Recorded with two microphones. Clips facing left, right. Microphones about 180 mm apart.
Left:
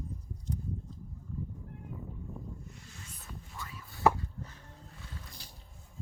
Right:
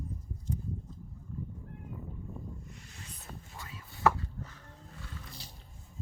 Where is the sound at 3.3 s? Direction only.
50° right (ahead or behind).